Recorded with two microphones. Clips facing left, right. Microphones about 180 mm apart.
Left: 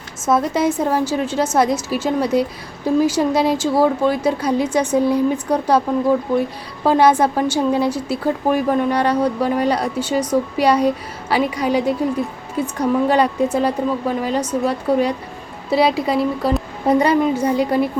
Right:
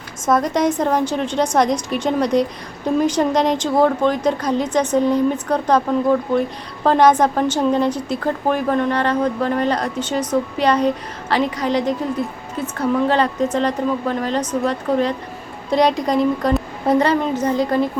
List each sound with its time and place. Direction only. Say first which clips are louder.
0.3 s a woman's voice: even; 5° left (ahead or behind)